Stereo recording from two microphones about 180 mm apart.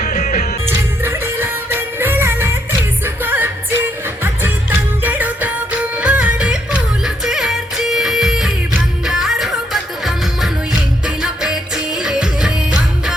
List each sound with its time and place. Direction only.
0.0 s music: 45° left (ahead or behind)
0.7 s music: 10° right (ahead or behind)